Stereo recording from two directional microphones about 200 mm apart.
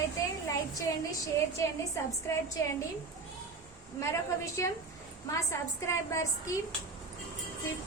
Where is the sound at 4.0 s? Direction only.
15° left (ahead or behind).